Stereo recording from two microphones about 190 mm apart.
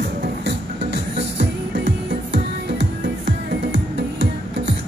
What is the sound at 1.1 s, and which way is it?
Music, 65° right (ahead or behind).